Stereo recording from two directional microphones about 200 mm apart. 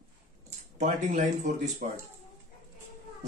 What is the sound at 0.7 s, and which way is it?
Speech, 35° right (ahead or behind).